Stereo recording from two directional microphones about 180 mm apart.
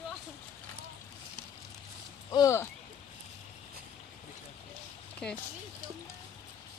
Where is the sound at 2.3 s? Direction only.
15° left (ahead or behind).